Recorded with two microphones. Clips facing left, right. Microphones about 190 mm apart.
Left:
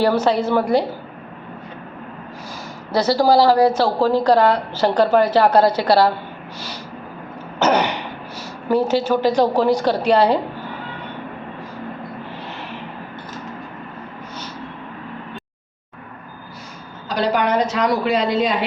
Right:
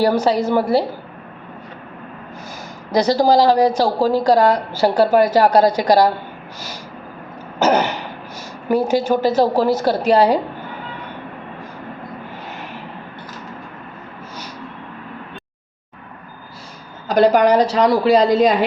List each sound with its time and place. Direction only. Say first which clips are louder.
0.0 s a woman's voice: right 1 dB; 10° right (ahead or behind)
2.9 s a woman's voice: right 1 dB; 15° right (ahead or behind)
7.6 s throat clearing: right 1 dB; 5° right (ahead or behind)
8.6 s a woman's voice: right 1 dB; 10° right (ahead or behind)
17.1 s a woman's voice: right 6 dB; 45° right (ahead or behind)